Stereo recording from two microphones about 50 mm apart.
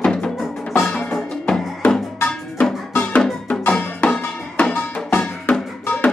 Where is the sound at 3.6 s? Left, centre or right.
Left.